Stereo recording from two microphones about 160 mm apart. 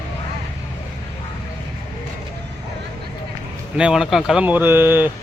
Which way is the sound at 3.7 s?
5° right (ahead or behind).